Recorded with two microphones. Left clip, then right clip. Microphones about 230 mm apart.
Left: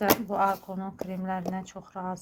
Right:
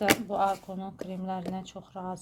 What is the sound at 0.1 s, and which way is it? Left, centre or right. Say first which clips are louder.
A woman's voice: left 1 dB; centre.